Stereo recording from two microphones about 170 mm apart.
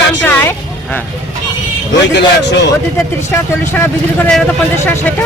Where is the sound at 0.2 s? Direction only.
10° left (ahead or behind).